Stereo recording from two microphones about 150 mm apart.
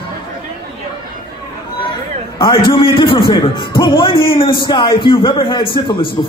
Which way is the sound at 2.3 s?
30° left (ahead or behind).